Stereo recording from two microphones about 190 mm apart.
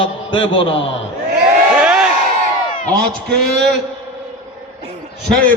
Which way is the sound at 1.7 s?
5° right (ahead or behind).